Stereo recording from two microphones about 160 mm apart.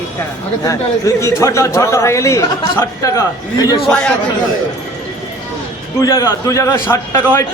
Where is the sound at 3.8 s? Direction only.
5° left (ahead or behind).